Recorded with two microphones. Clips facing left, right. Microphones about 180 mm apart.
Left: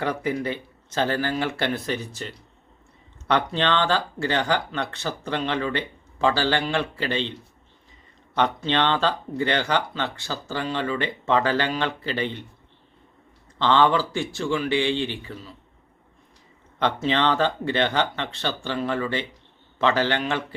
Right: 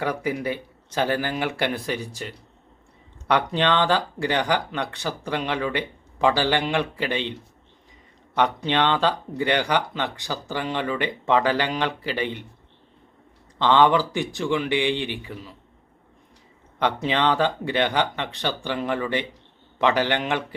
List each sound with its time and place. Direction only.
0.0 s speech: 10° right (ahead or behind)
8.4 s speech: 10° right (ahead or behind)
13.6 s speech: 15° right (ahead or behind)
16.7 s speech: 10° right (ahead or behind)